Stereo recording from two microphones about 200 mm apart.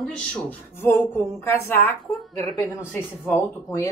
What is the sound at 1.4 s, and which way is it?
Speech, 10° left (ahead or behind).